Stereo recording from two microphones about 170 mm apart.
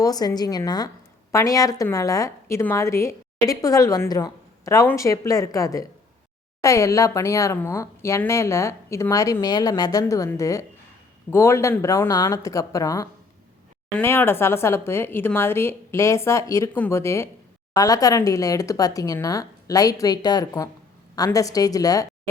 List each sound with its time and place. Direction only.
0.0 s a woman's voice: 20° left (ahead or behind)